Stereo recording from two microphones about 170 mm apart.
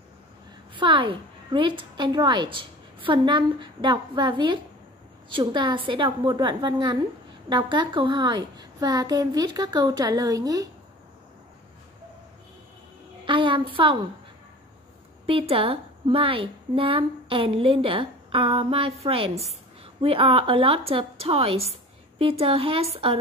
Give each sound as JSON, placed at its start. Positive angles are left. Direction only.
{"t": 0.7, "sound": "a woman's voice", "side_deg": -30}
{"t": 13.2, "sound": "a sound", "side_deg": -30}
{"t": 15.2, "sound": "a woman's voice", "side_deg": -35}